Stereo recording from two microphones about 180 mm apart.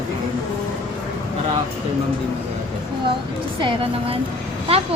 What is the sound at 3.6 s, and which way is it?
Speech, 30° right (ahead or behind).